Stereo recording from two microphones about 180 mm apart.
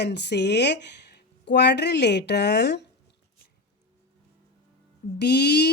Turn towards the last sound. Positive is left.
turn(degrees=65)  # may be behind; listen again after turning